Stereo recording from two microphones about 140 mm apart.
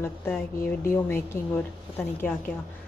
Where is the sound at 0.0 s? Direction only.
15° left (ahead or behind).